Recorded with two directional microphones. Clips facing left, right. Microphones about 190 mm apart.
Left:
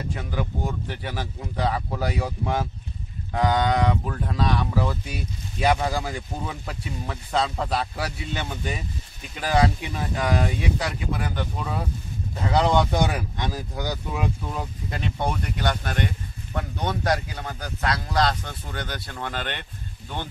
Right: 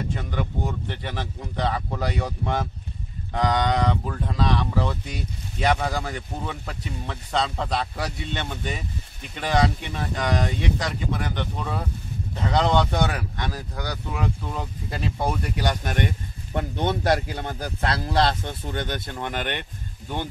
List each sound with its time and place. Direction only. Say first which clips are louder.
0.1 s speech: right 1 dB; 5° left (ahead or behind)
14.5 s a man's voice: even; centre (ahead or behind); by 19.6 s 15° right (ahead or behind)